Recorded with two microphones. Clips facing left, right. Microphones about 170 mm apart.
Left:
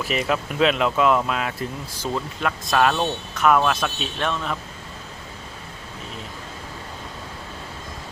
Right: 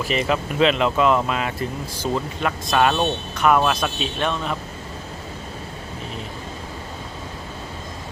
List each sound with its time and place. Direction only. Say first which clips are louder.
0.0 s speech: right 2 dB; centre (ahead or behind)
2.9 s speech: right 2 dB; 20° right (ahead or behind)
3.3 s speech: even; centre (ahead or behind)